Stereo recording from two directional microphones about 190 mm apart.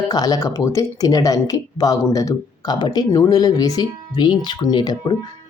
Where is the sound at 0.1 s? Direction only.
20° left (ahead or behind).